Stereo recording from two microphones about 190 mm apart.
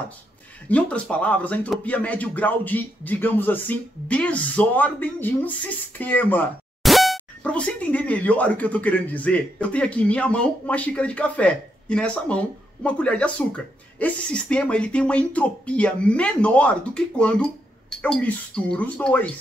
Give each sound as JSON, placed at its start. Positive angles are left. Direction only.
{"t": 0.7, "sound": "speech", "side_deg": 5}